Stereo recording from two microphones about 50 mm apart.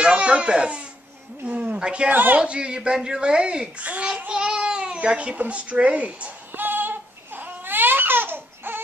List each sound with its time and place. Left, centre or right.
0.0 s baby cry: right
1.4 s a man's voice: right
2.0 s a woman's voice: right
2.4 s a man's voice: right
6.5 s baby cry: right